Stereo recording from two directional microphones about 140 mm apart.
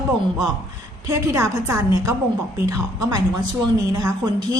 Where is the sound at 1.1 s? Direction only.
20° right (ahead or behind).